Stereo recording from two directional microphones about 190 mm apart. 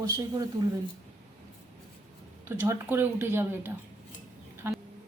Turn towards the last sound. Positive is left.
turn(degrees=-10)  # may be behind; listen again after turning